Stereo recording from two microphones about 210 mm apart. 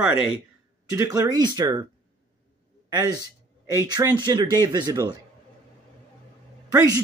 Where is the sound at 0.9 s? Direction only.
15° right (ahead or behind).